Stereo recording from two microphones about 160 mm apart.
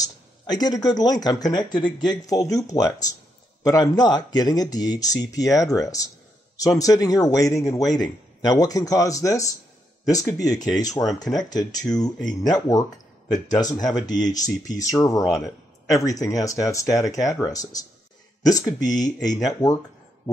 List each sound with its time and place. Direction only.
0.0 s speech: 25° left (ahead or behind)